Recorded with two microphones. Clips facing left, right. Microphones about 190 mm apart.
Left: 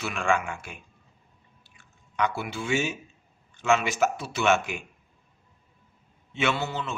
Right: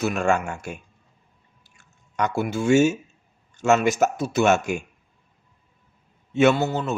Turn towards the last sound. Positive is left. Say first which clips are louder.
# right 9 dB
turn(degrees=-40)  # may be behind; listen again after turning